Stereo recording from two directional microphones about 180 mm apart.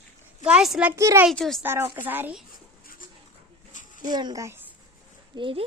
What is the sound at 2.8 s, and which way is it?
Pigeon, 50° left (ahead or behind).